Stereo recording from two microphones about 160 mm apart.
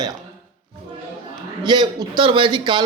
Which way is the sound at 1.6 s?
25° right (ahead or behind).